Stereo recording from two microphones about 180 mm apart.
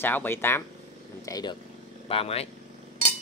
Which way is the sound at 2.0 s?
30° left (ahead or behind).